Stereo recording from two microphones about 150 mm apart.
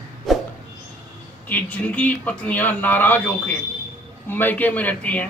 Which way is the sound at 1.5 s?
10° left (ahead or behind).